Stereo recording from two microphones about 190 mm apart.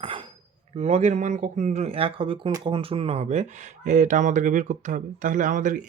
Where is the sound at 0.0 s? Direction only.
25° right (ahead or behind).